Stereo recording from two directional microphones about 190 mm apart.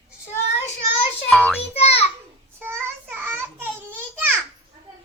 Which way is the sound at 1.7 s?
30° left (ahead or behind).